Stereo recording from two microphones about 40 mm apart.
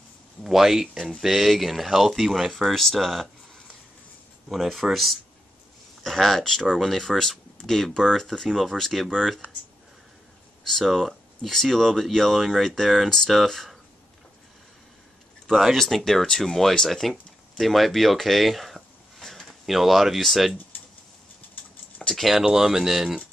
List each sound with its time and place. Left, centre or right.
0.4 s speech: centre
2.5 s speech: centre
4.5 s speech: centre
10.6 s speech: centre
15.5 s speech: centre
19.4 s speech: centre
22.1 s speech: centre
22.4 s speech: centre